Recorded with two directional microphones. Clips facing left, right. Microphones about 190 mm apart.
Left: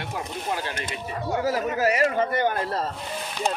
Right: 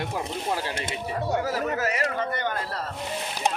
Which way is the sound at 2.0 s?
25° left (ahead or behind).